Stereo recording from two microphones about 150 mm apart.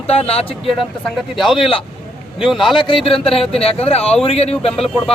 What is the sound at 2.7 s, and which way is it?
Speech, 35° left (ahead or behind).